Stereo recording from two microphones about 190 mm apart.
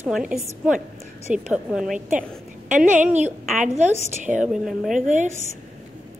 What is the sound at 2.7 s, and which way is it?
A woman's voice, 40° right (ahead or behind).